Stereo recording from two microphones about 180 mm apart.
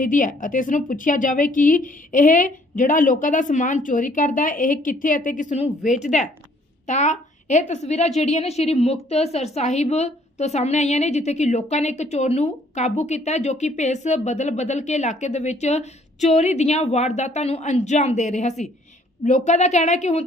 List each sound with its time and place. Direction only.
0.0 s a woman's voice: 45° left (ahead or behind)